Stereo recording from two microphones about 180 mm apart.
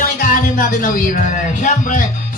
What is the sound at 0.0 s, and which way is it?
Music, 50° left (ahead or behind).